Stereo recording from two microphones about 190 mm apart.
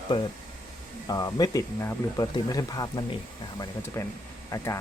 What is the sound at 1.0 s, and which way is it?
Speech, 20° left (ahead or behind).